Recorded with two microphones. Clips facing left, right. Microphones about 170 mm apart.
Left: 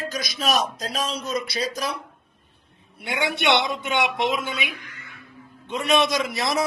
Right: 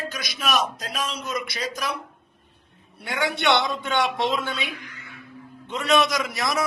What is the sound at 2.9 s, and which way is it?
A man's voice, 20° left (ahead or behind).